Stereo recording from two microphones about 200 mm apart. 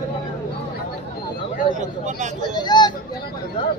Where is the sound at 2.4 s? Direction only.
20° left (ahead or behind).